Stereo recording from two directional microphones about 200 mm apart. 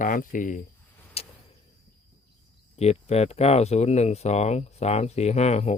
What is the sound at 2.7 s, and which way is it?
Speech, 30° left (ahead or behind).